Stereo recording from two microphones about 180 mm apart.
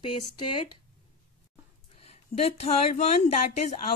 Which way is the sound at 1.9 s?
35° left (ahead or behind).